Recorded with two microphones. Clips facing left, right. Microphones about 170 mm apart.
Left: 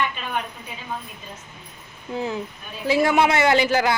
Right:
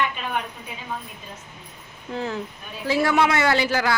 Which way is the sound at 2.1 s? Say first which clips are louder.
Left 1 dB; 10° left (ahead or behind).